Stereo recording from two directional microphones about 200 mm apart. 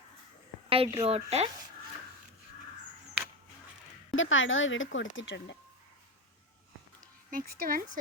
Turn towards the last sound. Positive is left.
turn(degrees=-45)  # may be behind; listen again after turning